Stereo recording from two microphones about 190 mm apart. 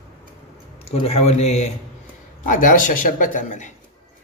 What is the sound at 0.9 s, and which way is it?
Speech, 35° left (ahead or behind).